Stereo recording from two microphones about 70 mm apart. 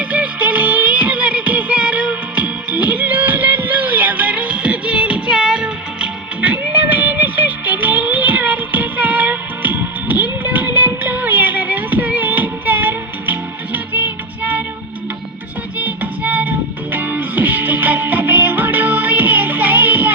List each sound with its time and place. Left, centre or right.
0.0 s music: centre
15.8 s music: right